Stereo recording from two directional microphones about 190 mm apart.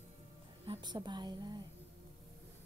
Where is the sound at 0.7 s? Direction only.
25° right (ahead or behind).